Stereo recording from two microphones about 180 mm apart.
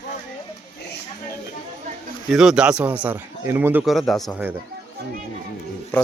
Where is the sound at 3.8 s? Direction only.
Centre (ahead or behind).